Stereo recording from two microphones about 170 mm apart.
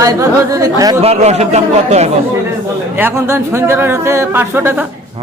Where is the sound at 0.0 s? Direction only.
20° right (ahead or behind).